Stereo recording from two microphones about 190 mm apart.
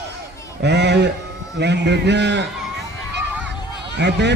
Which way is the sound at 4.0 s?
65° right (ahead or behind).